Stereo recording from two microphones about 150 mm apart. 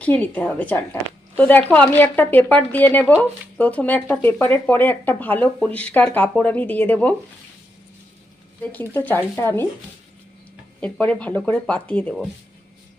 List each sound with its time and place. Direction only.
0.0 s speech: 10° left (ahead or behind)
8.6 s speech: 10° left (ahead or behind)
10.8 s speech: 5° left (ahead or behind)